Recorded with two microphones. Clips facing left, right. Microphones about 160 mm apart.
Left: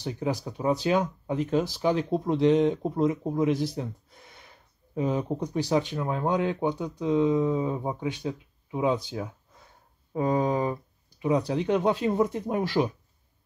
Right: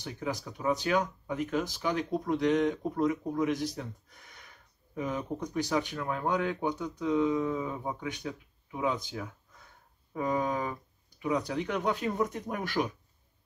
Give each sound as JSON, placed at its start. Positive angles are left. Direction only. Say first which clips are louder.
{"t": 0.0, "sound": "speech", "louder": "left 6 dB", "side_deg": 30}